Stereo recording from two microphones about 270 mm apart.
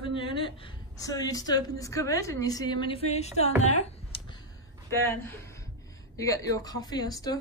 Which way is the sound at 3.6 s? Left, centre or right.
Left.